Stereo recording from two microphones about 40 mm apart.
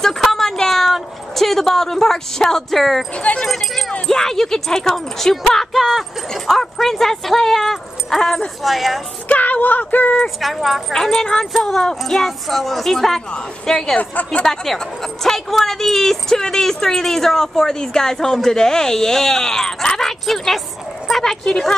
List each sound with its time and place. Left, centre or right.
0.0 s a sound: centre
1.3 s speech: centre
3.2 s speech: left
3.4 s speech: centre
9.3 s speech: left
10.4 s speech: centre
10.9 s speech: centre
13.9 s speech: left
14.4 s speech: centre